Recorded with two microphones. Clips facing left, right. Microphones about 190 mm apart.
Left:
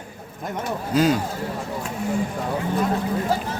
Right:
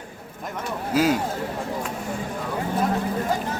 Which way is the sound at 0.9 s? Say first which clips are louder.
Left 1 dB; 5° right (ahead or behind).